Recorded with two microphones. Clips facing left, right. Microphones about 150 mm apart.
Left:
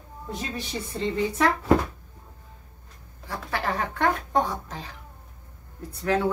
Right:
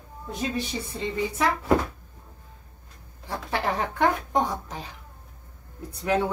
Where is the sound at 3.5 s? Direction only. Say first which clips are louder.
Right 1 dB; 15° right (ahead or behind).